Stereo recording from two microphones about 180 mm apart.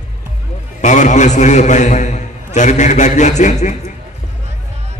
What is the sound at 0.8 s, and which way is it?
A man's voice, 40° left (ahead or behind).